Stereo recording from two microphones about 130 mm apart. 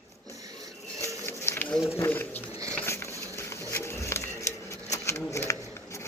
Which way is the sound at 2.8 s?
20° left (ahead or behind).